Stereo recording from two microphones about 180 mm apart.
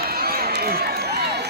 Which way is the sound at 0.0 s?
55° right (ahead or behind).